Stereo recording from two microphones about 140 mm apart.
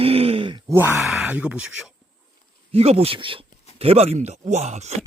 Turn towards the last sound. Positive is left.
turn(degrees=-50)  # may be behind; listen again after turning